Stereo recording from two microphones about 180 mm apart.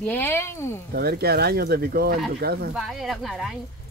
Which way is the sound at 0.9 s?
60° right (ahead or behind).